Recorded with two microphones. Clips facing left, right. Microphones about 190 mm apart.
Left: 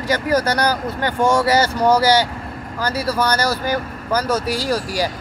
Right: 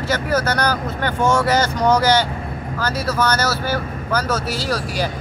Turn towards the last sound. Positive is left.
turn(degrees=10)  # may be behind; listen again after turning